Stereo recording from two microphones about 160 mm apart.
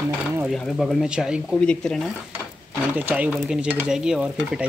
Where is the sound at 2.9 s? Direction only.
10° right (ahead or behind).